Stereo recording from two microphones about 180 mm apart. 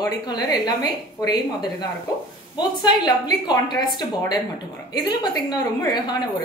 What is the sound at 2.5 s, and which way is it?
A woman's voice, 25° left (ahead or behind).